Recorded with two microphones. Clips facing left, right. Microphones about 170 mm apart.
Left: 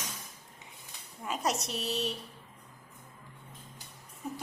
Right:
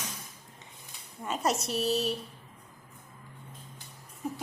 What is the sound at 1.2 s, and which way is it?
Speech, centre (ahead or behind).